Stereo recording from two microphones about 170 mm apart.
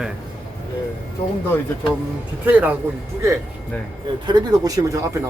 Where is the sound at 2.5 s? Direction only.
10° right (ahead or behind).